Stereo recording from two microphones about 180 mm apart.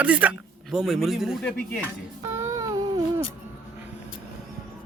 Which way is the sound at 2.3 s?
15° right (ahead or behind).